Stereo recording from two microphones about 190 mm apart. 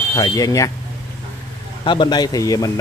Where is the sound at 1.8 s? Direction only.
25° left (ahead or behind).